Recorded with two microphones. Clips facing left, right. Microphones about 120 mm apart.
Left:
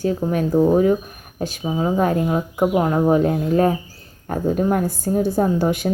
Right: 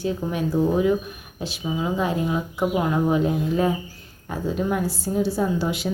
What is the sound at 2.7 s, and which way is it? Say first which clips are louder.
Speech: left 4 dB; 35° left (ahead or behind).